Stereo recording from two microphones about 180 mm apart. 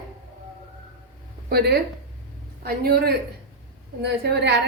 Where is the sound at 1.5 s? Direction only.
60° right (ahead or behind).